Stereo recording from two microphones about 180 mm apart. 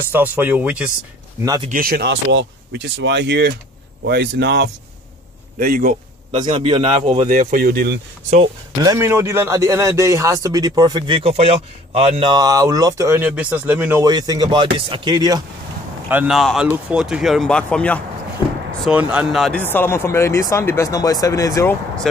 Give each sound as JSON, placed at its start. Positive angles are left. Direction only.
{"t": 0.1, "sound": "speech", "side_deg": -10}
{"t": 1.7, "sound": "speech", "side_deg": -55}
{"t": 5.6, "sound": "speech", "side_deg": -50}
{"t": 6.4, "sound": "a man's voice", "side_deg": -35}
{"t": 7.2, "sound": "speech", "side_deg": -50}
{"t": 8.8, "sound": "speech", "side_deg": -15}
{"t": 14.0, "sound": "speech", "side_deg": -20}
{"t": 16.1, "sound": "speech", "side_deg": -5}
{"t": 18.9, "sound": "speech", "side_deg": -5}
{"t": 19.6, "sound": "speech", "side_deg": 10}